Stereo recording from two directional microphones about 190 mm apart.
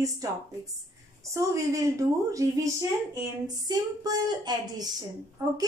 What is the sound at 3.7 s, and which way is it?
Speech, 20° right (ahead or behind).